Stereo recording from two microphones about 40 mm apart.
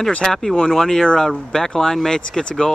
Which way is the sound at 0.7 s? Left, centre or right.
Centre.